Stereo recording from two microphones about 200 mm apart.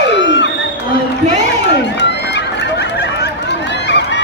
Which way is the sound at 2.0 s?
60° left (ahead or behind).